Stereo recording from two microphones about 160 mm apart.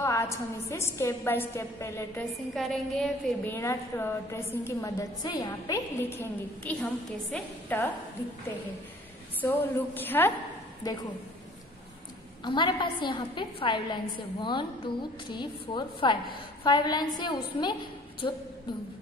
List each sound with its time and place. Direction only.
0.0 s a woman's voice: 20° left (ahead or behind)
2.5 s a woman's voice: centre (ahead or behind)
3.5 s a woman's voice: 15° left (ahead or behind)
9.4 s a woman's voice: 10° left (ahead or behind)
10.8 s a woman's voice: 25° left (ahead or behind)
12.4 s a woman's voice: 30° left (ahead or behind)